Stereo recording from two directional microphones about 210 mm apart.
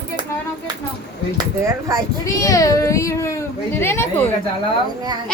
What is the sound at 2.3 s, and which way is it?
Speech, 15° left (ahead or behind).